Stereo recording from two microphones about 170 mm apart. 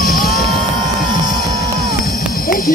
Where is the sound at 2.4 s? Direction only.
55° left (ahead or behind).